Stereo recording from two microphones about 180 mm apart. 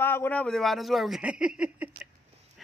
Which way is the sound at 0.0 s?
10° left (ahead or behind).